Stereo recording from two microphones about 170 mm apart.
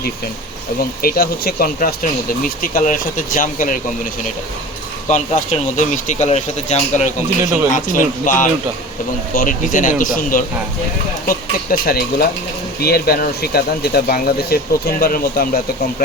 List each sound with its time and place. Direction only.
1.0 s speech: 60° left (ahead or behind)
5.0 s speech: 45° left (ahead or behind)